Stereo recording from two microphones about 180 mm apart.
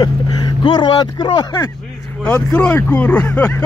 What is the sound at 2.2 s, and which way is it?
Speech, 10° left (ahead or behind).